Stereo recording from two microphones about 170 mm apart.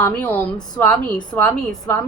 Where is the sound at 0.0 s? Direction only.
10° left (ahead or behind).